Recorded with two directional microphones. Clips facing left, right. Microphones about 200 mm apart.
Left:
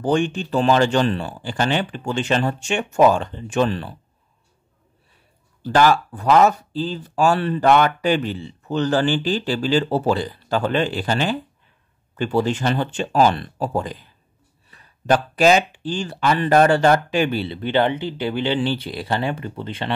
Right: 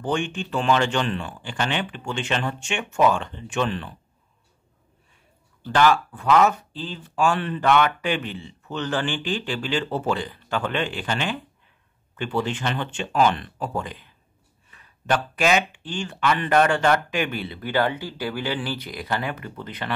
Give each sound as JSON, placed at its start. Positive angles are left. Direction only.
{"t": 0.0, "sound": "speech", "side_deg": 40}
{"t": 5.6, "sound": "speech", "side_deg": 40}